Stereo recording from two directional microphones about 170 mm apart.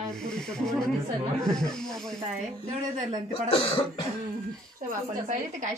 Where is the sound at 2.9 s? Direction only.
45° right (ahead or behind).